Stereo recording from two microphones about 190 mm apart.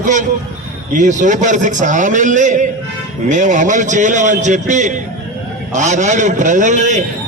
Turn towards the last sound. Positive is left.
turn(degrees=-40)  # may be behind; listen again after turning